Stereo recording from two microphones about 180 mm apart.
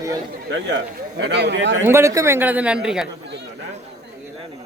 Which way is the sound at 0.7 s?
70° right (ahead or behind).